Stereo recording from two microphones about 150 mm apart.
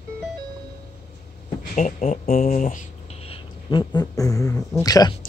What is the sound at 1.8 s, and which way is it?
Speech, 55° left (ahead or behind).